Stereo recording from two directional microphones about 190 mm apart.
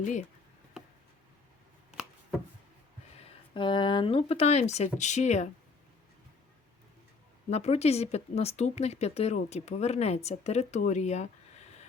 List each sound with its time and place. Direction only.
0.0 s speech: 40° left (ahead or behind)
3.2 s speech: 25° left (ahead or behind)
7.5 s speech: 35° left (ahead or behind)